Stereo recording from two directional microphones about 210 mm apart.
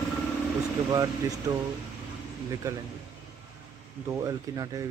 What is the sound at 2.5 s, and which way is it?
Speech, 15° right (ahead or behind).